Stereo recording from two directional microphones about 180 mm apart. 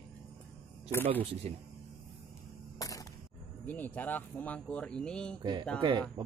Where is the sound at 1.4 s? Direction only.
35° right (ahead or behind).